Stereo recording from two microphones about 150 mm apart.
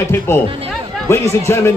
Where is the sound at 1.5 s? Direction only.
15° left (ahead or behind).